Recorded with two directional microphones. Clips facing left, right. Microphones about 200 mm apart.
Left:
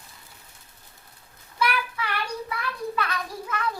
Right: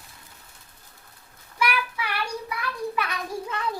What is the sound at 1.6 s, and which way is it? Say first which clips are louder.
Child singing: even; 10° right (ahead or behind).